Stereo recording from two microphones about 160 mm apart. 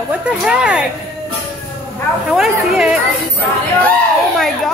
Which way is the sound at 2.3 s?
5° right (ahead or behind).